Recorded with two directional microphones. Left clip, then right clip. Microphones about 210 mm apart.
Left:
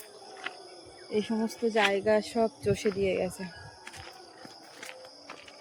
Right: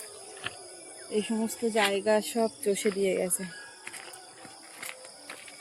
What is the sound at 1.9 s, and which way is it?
Speech, 40° right (ahead or behind).